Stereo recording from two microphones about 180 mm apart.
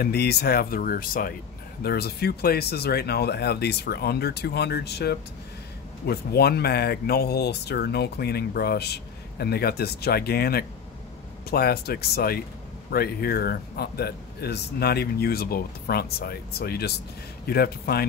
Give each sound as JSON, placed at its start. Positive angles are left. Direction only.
{"t": 0.0, "sound": "speech", "side_deg": 60}